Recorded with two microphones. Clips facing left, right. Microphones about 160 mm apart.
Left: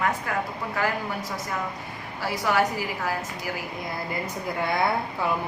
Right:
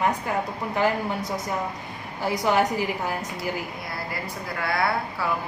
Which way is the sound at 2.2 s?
20° right (ahead or behind).